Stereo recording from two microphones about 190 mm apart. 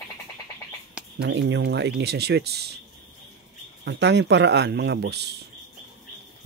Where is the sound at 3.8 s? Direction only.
65° right (ahead or behind).